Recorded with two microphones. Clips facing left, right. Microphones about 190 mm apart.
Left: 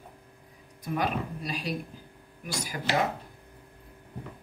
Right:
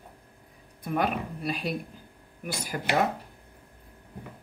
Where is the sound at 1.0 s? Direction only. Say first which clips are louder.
Right 2 dB; 55° right (ahead or behind).